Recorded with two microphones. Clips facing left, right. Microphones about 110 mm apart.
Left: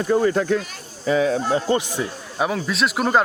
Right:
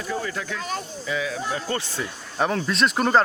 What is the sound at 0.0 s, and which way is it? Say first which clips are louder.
Speech: left 10 dB; 45° left (ahead or behind).